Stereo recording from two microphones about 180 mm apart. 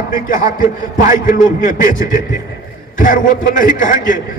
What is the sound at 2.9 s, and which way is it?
A man's voice, 45° left (ahead or behind).